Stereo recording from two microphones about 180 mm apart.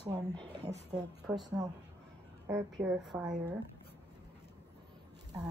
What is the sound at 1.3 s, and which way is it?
A woman's voice, 10° right (ahead or behind).